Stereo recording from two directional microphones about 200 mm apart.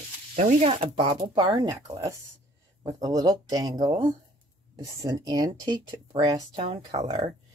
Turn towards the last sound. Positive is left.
turn(degrees=-25)  # may be behind; listen again after turning